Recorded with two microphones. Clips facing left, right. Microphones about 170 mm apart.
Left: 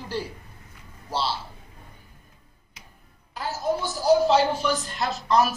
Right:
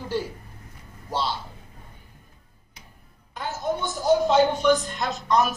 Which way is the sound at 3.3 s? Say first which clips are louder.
Left 1 dB; centre (ahead or behind).